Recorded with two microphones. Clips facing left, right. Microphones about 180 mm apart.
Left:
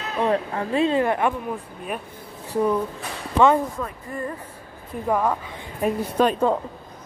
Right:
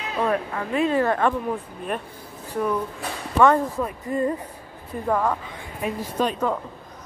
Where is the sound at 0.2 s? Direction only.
30° left (ahead or behind).